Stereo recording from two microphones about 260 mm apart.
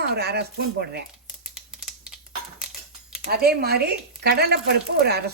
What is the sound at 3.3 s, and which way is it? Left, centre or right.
Speech, right.